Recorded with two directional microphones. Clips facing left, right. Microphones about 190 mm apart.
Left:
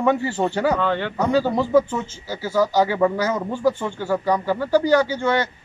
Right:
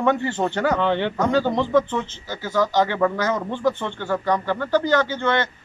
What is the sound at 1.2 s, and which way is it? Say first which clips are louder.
Speech: left 3 dB; 10° left (ahead or behind).